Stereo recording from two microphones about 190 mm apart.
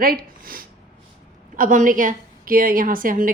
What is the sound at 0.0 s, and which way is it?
Speech, 50° right (ahead or behind).